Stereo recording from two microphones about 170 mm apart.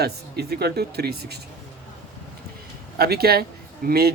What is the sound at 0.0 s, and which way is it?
Speech, 70° right (ahead or behind).